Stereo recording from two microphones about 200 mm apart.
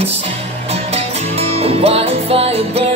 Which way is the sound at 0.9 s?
30° right (ahead or behind).